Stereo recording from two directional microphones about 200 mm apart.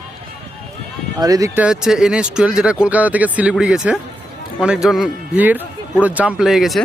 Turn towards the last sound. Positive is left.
turn(degrees=0)  # may be behind; listen again after turning